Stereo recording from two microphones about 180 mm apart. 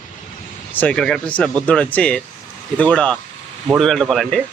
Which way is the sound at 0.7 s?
10° left (ahead or behind).